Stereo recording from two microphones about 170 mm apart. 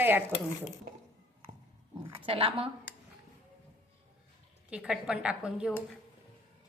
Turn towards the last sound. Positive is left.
turn(degrees=-5)  # may be behind; listen again after turning